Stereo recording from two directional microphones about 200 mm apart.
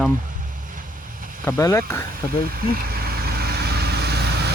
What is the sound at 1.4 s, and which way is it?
Speech, 15° left (ahead or behind).